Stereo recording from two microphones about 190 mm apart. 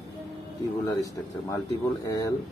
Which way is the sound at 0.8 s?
15° left (ahead or behind).